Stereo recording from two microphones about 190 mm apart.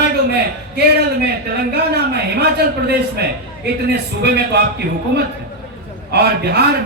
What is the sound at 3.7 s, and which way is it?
Speech, 60° right (ahead or behind).